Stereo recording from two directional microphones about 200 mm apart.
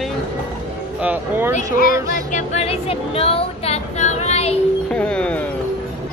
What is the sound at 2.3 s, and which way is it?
Speech, 30° left (ahead or behind).